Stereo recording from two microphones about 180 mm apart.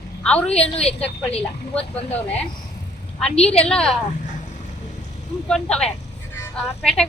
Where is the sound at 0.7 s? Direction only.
35° left (ahead or behind).